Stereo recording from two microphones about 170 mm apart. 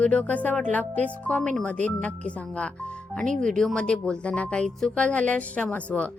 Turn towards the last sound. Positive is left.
turn(degrees=10)  # may be behind; listen again after turning